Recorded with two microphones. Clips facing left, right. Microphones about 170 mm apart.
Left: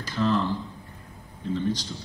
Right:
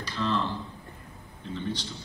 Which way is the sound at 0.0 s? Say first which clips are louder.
Left 5 dB; 45° left (ahead or behind).